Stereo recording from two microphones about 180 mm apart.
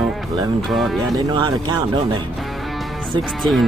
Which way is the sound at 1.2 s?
20° right (ahead or behind).